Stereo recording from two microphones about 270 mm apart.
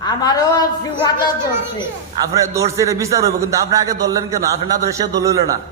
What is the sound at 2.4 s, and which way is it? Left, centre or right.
A man's voice, centre.